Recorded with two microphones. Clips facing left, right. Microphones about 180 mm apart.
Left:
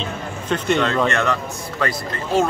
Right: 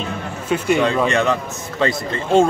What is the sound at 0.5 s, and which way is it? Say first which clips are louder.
A man's voice: right 2 dB; 10° right (ahead or behind).